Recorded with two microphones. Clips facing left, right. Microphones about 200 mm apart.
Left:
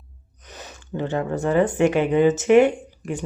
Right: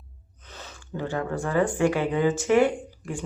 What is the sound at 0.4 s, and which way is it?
Speech, 15° left (ahead or behind).